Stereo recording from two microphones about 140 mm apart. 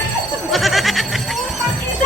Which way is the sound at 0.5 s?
Centre (ahead or behind).